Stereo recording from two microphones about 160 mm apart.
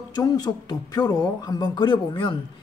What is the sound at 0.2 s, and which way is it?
Speech, 25° left (ahead or behind).